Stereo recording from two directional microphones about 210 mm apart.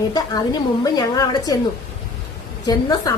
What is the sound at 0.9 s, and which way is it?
Speech, 20° left (ahead or behind).